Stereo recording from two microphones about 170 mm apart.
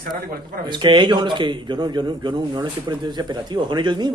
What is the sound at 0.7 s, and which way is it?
A man's voice, 25° right (ahead or behind).